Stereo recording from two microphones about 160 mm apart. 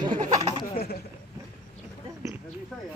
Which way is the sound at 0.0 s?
25° right (ahead or behind).